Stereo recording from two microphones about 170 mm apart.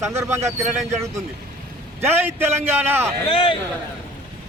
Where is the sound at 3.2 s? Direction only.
30° left (ahead or behind).